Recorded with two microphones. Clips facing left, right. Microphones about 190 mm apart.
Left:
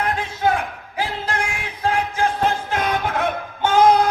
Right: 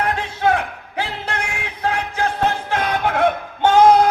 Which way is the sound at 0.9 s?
65° right (ahead or behind).